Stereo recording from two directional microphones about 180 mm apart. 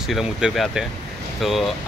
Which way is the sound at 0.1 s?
Centre (ahead or behind).